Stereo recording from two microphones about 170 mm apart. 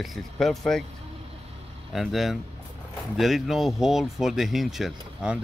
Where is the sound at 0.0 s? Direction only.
Centre (ahead or behind).